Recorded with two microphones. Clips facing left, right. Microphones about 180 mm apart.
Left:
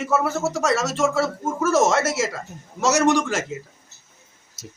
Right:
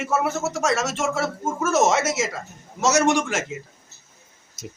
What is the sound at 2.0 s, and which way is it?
Speech, 55° left (ahead or behind).